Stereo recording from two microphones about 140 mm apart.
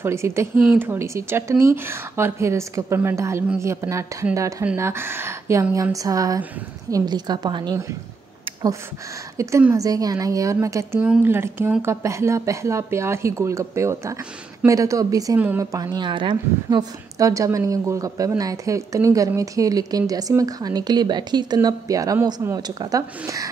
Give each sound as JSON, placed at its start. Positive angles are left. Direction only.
{"t": 0.0, "sound": "a woman's voice", "side_deg": -20}
{"t": 9.4, "sound": "a woman's voice", "side_deg": -20}
{"t": 15.3, "sound": "speech", "side_deg": -10}
{"t": 15.6, "sound": "a woman's voice", "side_deg": -25}